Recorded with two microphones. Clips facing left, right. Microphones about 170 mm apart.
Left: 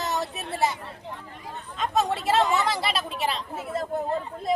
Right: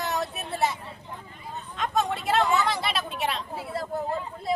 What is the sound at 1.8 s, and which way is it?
Speech, centre (ahead or behind).